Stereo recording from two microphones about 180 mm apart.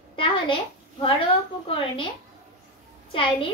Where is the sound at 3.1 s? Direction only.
30° left (ahead or behind).